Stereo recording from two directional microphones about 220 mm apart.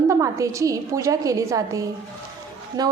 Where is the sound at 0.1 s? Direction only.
15° right (ahead or behind).